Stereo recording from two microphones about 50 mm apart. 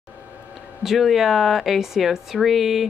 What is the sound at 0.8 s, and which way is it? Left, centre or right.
Speech, centre.